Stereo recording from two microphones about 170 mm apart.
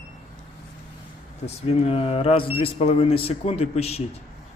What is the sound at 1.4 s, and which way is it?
Speech, 35° left (ahead or behind).